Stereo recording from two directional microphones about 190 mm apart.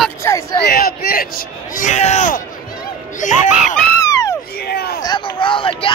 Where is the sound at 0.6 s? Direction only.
55° left (ahead or behind).